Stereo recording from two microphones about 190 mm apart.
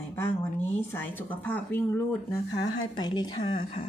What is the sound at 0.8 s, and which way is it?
Speech, 10° left (ahead or behind).